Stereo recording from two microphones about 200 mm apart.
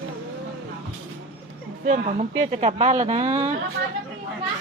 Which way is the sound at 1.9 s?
35° right (ahead or behind).